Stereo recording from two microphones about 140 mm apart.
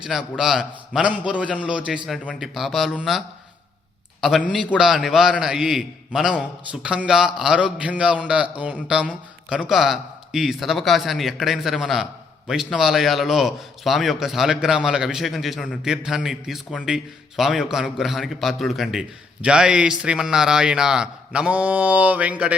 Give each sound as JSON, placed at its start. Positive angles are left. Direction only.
{"t": 0.0, "sound": "a man's voice", "side_deg": -5}